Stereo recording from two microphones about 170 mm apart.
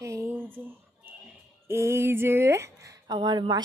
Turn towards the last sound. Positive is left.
turn(degrees=-25)  # may be behind; listen again after turning